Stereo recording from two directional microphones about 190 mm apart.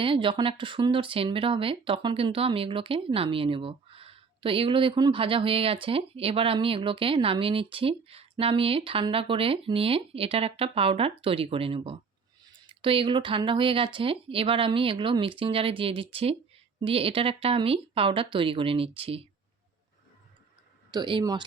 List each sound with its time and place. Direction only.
0.0 s speech: 25° right (ahead or behind)
20.9 s speech: 25° right (ahead or behind)